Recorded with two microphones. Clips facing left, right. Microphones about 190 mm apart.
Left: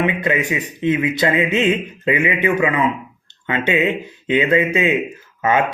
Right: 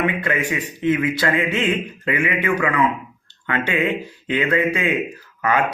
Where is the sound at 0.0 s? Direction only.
20° left (ahead or behind).